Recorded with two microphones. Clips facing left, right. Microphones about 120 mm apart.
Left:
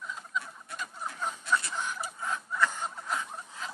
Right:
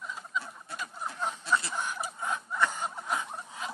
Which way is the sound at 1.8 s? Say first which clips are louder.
Right 1 dB; 20° right (ahead or behind).